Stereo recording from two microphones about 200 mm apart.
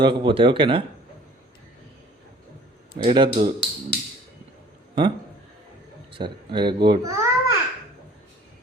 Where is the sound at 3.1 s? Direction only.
25° right (ahead or behind).